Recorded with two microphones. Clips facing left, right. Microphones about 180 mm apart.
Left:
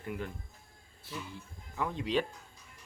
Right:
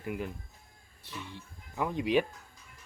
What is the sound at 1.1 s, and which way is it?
Speech, centre (ahead or behind).